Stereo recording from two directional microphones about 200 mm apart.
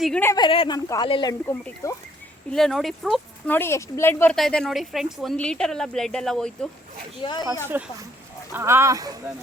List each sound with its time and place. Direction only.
0.0 s a woman's voice: 5° left (ahead or behind)
0.3 s a woman's voice: 25° left (ahead or behind)
2.5 s speech: centre (ahead or behind)
7.2 s speech: 20° left (ahead or behind)
7.7 s speech: 10° right (ahead or behind)